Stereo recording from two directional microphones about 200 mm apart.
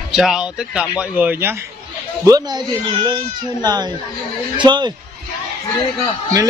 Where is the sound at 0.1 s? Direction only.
Centre (ahead or behind).